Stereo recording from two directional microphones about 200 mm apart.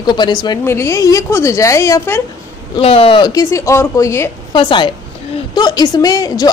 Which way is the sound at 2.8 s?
30° left (ahead or behind).